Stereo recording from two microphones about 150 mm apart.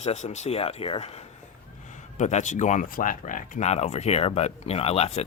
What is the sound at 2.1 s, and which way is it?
Speech, 55° left (ahead or behind).